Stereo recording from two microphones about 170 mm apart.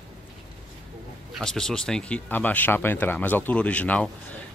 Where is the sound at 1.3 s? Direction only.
5° left (ahead or behind).